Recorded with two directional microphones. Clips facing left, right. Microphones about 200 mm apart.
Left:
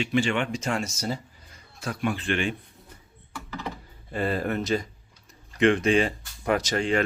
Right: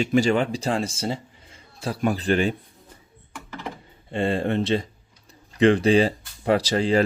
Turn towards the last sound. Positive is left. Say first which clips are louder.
# right 4 dB
turn(degrees=-35)  # may be behind; listen again after turning